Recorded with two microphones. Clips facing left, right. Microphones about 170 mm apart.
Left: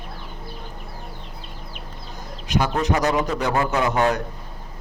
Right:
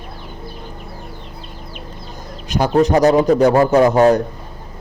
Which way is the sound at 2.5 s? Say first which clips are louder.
Right 8 dB; 35° right (ahead or behind).